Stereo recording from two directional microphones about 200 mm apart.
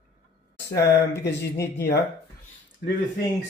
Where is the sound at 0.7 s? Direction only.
55° left (ahead or behind).